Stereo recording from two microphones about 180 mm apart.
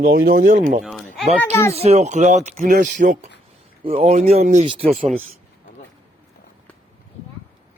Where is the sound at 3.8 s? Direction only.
30° right (ahead or behind).